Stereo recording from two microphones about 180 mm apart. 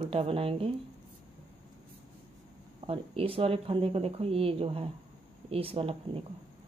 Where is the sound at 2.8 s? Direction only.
30° right (ahead or behind).